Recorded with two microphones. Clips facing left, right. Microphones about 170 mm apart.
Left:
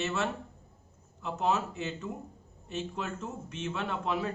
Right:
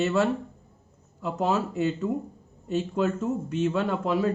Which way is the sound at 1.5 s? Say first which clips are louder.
Right 5 dB; 35° right (ahead or behind).